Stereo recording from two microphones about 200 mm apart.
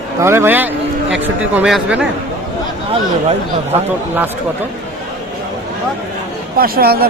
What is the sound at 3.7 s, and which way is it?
Speech, 30° right (ahead or behind).